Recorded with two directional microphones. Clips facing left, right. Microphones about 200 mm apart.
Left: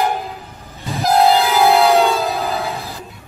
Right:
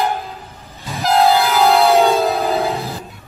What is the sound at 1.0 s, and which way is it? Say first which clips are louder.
Train: even; 15° left (ahead or behind).